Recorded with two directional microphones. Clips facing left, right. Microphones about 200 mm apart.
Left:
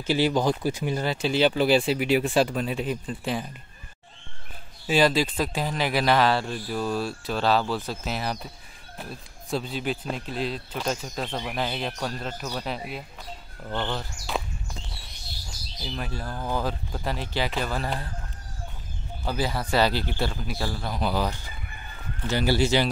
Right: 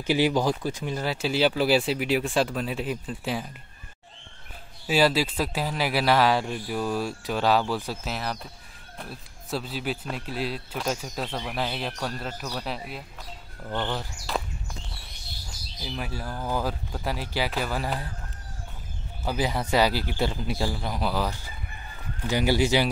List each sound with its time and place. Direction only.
0.0 s speech: 15° right (ahead or behind)
0.6 s speech: 5° left (ahead or behind)
1.0 s speech: 5° right (ahead or behind)
4.8 s speech: 5° right (ahead or behind)
14.3 s walk: centre (ahead or behind)
15.8 s speech: 10° right (ahead or behind)
19.2 s speech: 15° right (ahead or behind)
21.0 s speech: centre (ahead or behind)
22.2 s speech: 15° right (ahead or behind)